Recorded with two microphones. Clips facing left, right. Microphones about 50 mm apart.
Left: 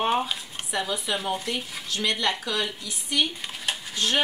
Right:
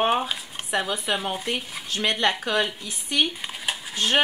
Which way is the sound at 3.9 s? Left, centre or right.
Right.